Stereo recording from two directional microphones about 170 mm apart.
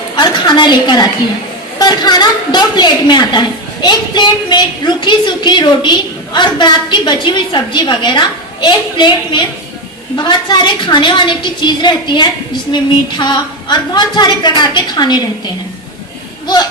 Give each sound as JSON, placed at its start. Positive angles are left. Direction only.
{"t": 0.2, "sound": "a woman's voice", "side_deg": 25}